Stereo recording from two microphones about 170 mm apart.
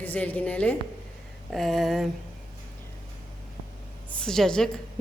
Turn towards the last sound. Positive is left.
turn(degrees=5)  # may be behind; listen again after turning